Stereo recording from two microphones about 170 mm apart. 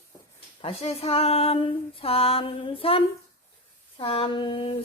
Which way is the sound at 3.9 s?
30° left (ahead or behind).